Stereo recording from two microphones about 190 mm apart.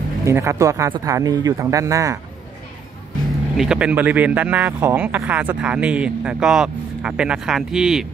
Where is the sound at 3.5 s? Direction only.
5° right (ahead or behind).